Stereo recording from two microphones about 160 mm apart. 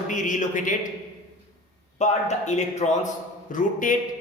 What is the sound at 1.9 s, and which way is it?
A man's voice, 45° left (ahead or behind).